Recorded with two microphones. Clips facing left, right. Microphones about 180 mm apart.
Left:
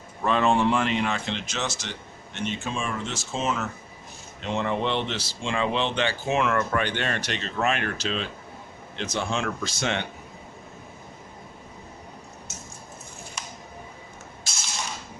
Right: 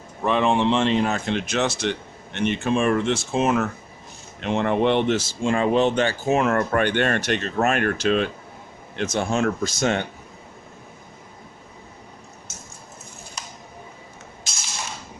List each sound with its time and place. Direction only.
0.3 s speech: 15° right (ahead or behind); by 10.1 s 45° right (ahead or behind)